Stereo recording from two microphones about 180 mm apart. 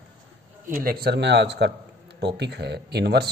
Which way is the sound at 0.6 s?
50° right (ahead or behind).